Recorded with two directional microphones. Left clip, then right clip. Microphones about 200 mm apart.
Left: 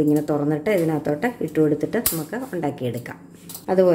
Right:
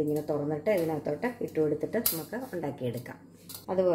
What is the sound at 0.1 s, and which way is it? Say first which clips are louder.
Speech: left 9 dB; 20° left (ahead or behind).